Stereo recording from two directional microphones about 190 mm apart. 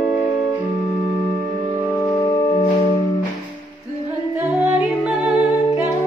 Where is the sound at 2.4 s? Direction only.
35° left (ahead or behind).